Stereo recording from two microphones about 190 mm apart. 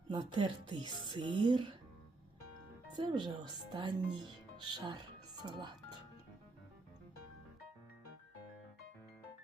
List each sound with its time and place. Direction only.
0.1 s speech: 25° right (ahead or behind)
2.9 s a woman's voice: 25° right (ahead or behind)